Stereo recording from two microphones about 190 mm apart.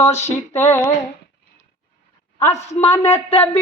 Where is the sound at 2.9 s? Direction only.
10° left (ahead or behind).